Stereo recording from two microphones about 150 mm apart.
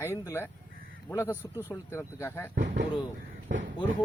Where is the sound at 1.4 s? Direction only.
15° right (ahead or behind).